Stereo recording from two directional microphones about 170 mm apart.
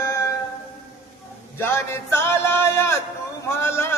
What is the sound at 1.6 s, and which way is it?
Music, 15° left (ahead or behind).